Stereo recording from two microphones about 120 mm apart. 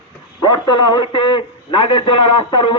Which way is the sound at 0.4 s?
35° left (ahead or behind).